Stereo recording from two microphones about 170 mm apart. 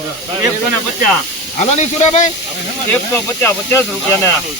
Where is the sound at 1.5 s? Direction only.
45° left (ahead or behind).